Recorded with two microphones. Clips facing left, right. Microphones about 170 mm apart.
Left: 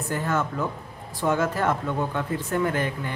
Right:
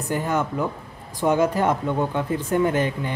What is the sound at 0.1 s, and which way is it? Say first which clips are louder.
Speech: right 3 dB; 15° right (ahead or behind).